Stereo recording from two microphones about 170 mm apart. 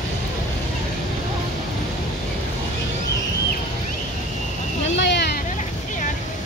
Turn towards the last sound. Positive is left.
turn(degrees=80)